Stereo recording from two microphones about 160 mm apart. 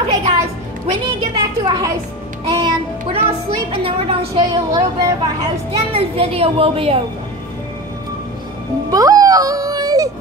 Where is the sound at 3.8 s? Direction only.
35° right (ahead or behind).